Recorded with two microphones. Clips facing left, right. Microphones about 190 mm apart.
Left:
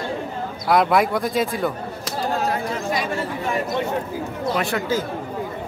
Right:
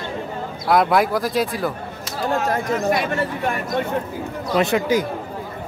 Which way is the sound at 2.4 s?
45° right (ahead or behind).